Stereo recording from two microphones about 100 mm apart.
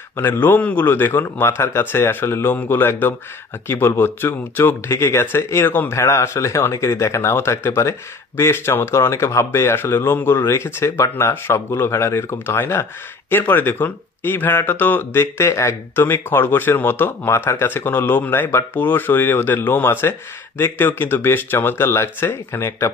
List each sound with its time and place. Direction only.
0.2 s speech: 20° left (ahead or behind)